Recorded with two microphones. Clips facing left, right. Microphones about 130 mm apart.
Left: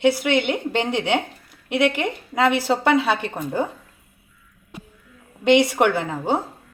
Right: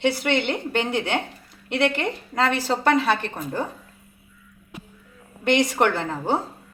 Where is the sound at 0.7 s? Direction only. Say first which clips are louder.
Left 2 dB; 20° left (ahead or behind).